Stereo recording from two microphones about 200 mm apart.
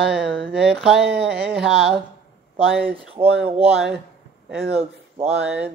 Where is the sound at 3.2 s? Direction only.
25° right (ahead or behind).